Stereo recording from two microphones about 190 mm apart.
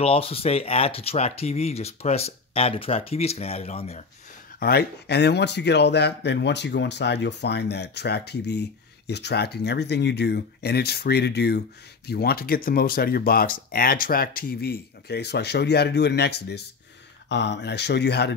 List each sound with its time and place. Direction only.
0.0 s speech: 30° left (ahead or behind)
4.6 s speech: 55° left (ahead or behind)